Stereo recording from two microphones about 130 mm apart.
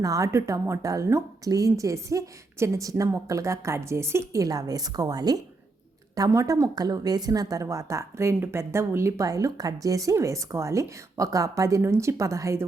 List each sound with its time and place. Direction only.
0.0 s a woman's voice: 25° right (ahead or behind)